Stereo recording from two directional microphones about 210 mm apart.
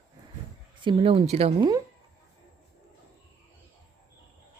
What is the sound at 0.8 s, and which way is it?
Speech, 25° right (ahead or behind).